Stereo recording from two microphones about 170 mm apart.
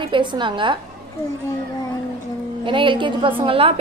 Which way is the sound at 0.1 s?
30° right (ahead or behind).